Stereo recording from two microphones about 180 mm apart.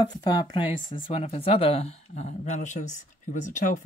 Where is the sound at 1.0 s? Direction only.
35° left (ahead or behind).